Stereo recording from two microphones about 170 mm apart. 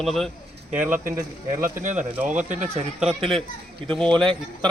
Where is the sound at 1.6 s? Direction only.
55° right (ahead or behind).